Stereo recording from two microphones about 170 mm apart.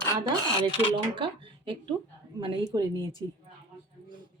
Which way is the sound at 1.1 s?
30° right (ahead or behind).